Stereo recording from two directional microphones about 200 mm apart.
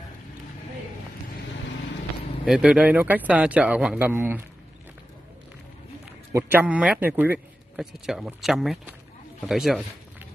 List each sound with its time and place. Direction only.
2.4 s speech: 5° right (ahead or behind)
6.3 s speech: 10° right (ahead or behind)